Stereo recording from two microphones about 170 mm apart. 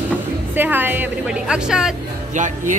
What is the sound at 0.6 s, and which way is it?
A woman's voice, 10° right (ahead or behind).